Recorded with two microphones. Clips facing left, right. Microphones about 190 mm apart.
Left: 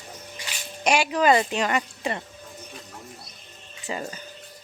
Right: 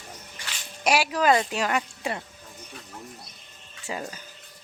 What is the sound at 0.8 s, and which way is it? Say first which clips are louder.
Speech: left 1 dB; 5° right (ahead or behind).